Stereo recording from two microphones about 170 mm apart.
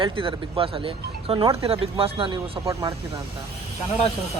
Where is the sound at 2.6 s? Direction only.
20° right (ahead or behind).